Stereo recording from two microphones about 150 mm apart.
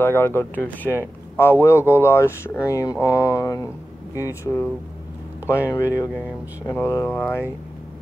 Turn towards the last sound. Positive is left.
turn(degrees=15)  # may be behind; listen again after turning